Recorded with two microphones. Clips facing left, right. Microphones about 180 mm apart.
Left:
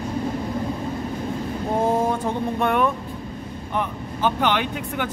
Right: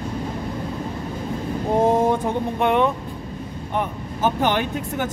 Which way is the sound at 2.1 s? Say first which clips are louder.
Right 2 dB; 20° right (ahead or behind).